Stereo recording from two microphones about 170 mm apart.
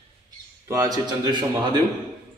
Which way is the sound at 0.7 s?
20° right (ahead or behind).